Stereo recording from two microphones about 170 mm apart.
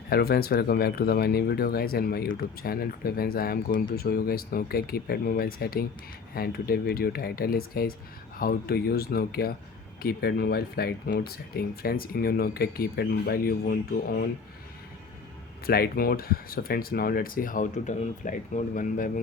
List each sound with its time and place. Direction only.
0.1 s speech: 65° left (ahead or behind)
15.6 s speech: 65° left (ahead or behind)